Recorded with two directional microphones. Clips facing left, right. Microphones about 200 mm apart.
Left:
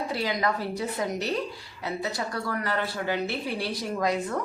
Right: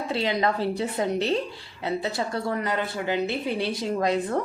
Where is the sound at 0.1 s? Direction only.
25° right (ahead or behind).